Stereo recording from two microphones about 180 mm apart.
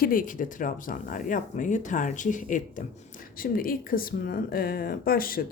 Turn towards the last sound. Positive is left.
turn(degrees=55)  # may be behind; listen again after turning